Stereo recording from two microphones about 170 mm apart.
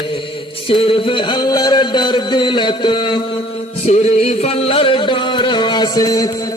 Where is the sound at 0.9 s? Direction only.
25° left (ahead or behind).